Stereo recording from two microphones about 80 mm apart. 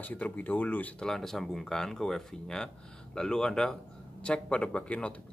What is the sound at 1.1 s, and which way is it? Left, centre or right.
Speech, centre.